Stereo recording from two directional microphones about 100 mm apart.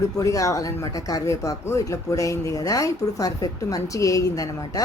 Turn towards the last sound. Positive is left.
turn(degrees=35)  # may be behind; listen again after turning